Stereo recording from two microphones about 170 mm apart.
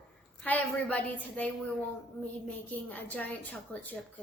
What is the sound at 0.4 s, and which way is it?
A woman's voice, 10° left (ahead or behind).